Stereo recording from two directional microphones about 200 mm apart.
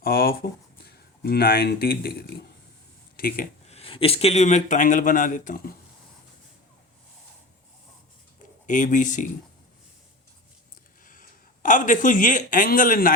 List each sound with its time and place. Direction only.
0.0 s a sound: 50° left (ahead or behind)
0.9 s speech: 50° left (ahead or behind)
3.7 s speech: 30° left (ahead or behind)
8.6 s speech: 40° left (ahead or behind)
11.0 s speech: 40° left (ahead or behind)